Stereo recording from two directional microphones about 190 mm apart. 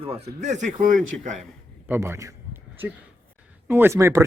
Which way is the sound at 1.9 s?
15° right (ahead or behind).